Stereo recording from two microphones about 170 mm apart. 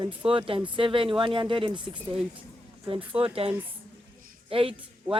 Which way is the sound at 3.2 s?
35° right (ahead or behind).